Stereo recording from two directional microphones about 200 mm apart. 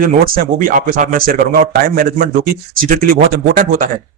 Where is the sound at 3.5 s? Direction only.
45° right (ahead or behind).